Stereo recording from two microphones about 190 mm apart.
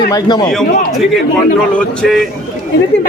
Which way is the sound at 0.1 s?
20° left (ahead or behind).